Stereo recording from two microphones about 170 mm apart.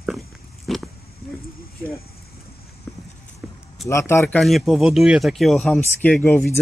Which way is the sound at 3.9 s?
15° left (ahead or behind).